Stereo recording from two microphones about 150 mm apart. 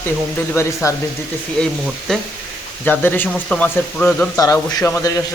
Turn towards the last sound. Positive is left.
turn(degrees=20)  # may be behind; listen again after turning